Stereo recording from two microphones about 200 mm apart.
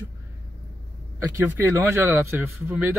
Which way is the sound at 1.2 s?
15° right (ahead or behind).